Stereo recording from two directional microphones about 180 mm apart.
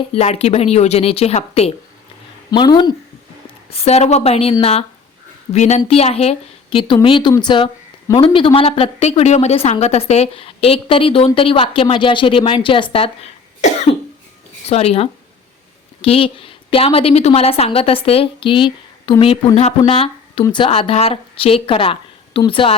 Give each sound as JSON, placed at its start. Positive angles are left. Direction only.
{"t": 0.1, "sound": "speech", "side_deg": 35}
{"t": 2.5, "sound": "speech", "side_deg": 25}
{"t": 3.7, "sound": "speech", "side_deg": 35}
{"t": 13.6, "sound": "cough", "side_deg": 40}
{"t": 14.6, "sound": "speech", "side_deg": 35}